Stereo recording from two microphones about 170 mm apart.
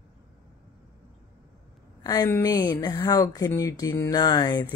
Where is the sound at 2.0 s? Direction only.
25° left (ahead or behind).